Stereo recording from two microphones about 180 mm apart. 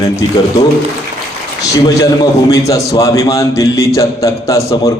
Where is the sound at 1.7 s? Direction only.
20° left (ahead or behind).